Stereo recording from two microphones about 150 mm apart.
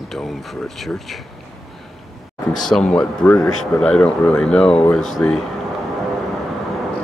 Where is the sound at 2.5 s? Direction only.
5° left (ahead or behind).